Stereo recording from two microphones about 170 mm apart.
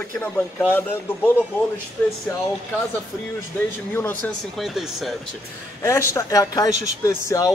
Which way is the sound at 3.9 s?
10° left (ahead or behind).